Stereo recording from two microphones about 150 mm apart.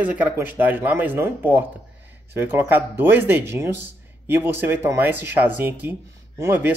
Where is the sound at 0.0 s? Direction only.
10° right (ahead or behind).